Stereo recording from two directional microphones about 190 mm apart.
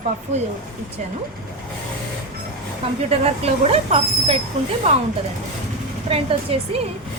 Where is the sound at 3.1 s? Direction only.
30° right (ahead or behind).